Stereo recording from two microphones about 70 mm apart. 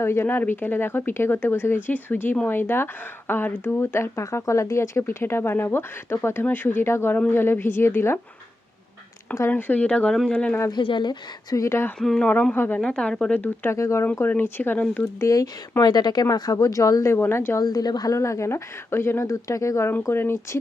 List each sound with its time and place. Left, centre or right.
0.0 s speech: left
9.5 s speech: left
10.7 s speech: left
11.5 s speech: left
11.9 s speech: centre
12.5 s speech: left
12.8 s speech: centre
13.7 s speech: left
14.3 s speech: left
15.8 s speech: left
16.3 s speech: left
17.1 s speech: left
17.6 s speech: left
18.1 s speech: left